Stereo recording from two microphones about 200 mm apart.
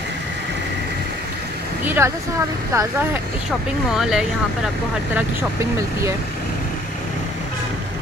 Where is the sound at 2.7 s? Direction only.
15° right (ahead or behind).